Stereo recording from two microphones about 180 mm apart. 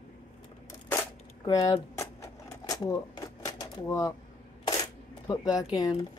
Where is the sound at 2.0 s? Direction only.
15° left (ahead or behind).